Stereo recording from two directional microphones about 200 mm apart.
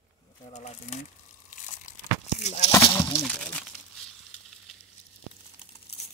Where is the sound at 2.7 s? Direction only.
20° left (ahead or behind).